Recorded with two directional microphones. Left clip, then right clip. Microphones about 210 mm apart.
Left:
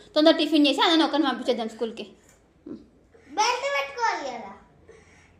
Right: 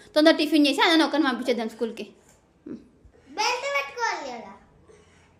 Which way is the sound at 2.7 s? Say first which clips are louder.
Right 1 dB; 25° right (ahead or behind).